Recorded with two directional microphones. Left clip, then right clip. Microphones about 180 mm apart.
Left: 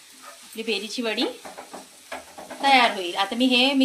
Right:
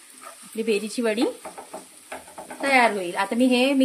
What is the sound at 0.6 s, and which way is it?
Speech, 60° right (ahead or behind).